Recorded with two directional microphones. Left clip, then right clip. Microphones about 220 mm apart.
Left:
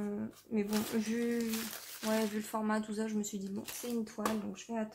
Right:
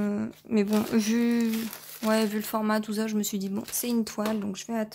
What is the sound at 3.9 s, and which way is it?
Speech, 50° right (ahead or behind).